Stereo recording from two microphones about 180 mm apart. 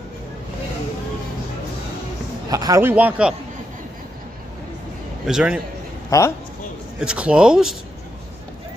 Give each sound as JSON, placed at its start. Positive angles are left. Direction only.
{"t": 2.5, "sound": "a man's voice", "side_deg": -20}
{"t": 5.2, "sound": "speech", "side_deg": -5}
{"t": 6.0, "sound": "a man's voice", "side_deg": 15}
{"t": 7.0, "sound": "speech", "side_deg": -5}